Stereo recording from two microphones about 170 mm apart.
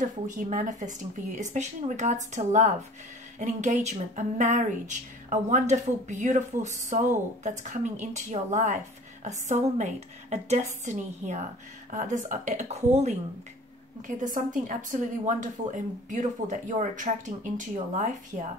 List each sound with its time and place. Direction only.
0.0 s a woman's voice: 50° right (ahead or behind)